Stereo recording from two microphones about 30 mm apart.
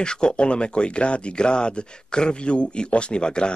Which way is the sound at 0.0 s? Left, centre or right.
Left.